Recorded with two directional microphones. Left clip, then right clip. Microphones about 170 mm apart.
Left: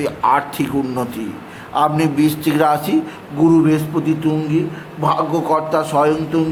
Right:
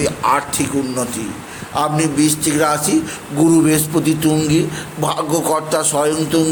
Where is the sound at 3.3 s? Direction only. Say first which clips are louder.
Even; 15° right (ahead or behind).